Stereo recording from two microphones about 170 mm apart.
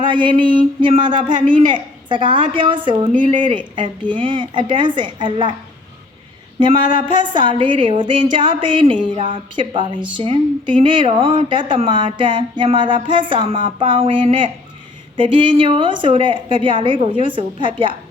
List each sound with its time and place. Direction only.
0.1 s a woman's voice: 30° right (ahead or behind)
6.6 s a woman's voice: 30° right (ahead or behind)